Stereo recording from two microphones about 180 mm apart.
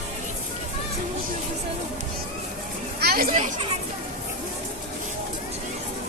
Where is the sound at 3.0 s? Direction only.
55° right (ahead or behind).